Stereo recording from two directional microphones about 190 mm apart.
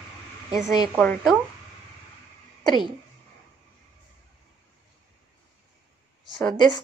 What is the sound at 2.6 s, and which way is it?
Speech, 25° left (ahead or behind).